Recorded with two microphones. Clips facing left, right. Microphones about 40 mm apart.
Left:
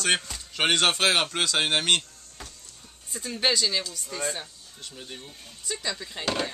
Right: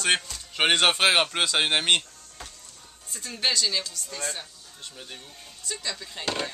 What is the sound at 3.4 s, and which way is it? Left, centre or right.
Speech, centre.